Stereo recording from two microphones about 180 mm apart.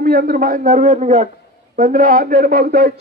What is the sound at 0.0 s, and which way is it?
A man's voice, 55° right (ahead or behind).